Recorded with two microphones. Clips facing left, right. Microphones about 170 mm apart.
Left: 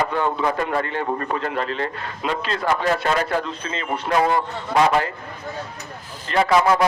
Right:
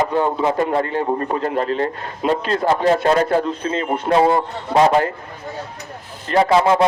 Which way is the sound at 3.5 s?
45° right (ahead or behind).